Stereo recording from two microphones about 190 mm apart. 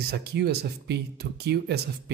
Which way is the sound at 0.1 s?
60° right (ahead or behind).